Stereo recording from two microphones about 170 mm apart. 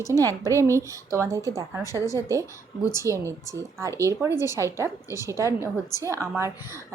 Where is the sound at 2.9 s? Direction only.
15° right (ahead or behind).